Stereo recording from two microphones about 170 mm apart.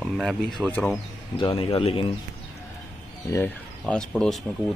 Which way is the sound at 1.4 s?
30° left (ahead or behind).